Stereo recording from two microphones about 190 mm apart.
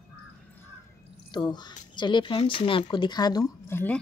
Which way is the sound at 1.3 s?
20° left (ahead or behind).